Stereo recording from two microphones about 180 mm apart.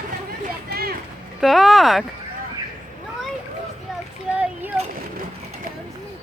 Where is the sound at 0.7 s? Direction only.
60° right (ahead or behind).